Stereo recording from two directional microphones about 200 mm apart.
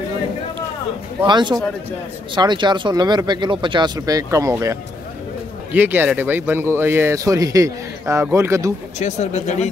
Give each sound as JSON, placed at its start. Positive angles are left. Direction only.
{"t": 1.2, "sound": "speech", "side_deg": -20}
{"t": 9.0, "sound": "speech", "side_deg": 35}